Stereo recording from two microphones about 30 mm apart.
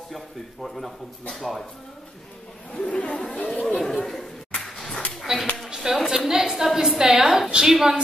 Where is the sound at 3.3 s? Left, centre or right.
Left.